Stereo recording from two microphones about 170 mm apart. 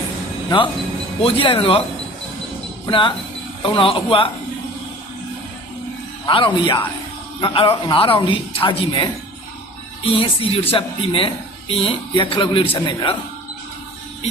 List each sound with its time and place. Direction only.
1.2 s speech: 30° left (ahead or behind)
2.8 s speech: 30° left (ahead or behind)
6.2 s speech: 30° left (ahead or behind)